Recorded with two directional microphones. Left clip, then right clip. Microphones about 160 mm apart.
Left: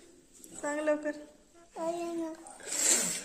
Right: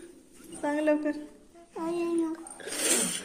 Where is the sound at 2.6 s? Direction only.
10° left (ahead or behind).